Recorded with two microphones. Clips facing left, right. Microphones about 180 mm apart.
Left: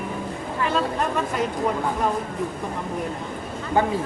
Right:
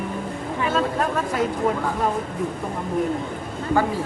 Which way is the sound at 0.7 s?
Centre (ahead or behind).